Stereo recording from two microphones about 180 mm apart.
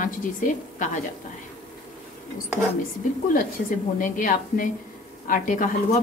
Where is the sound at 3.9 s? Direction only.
50° left (ahead or behind).